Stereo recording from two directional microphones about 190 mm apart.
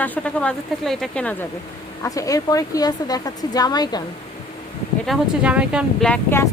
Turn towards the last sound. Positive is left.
turn(degrees=10)  # may be behind; listen again after turning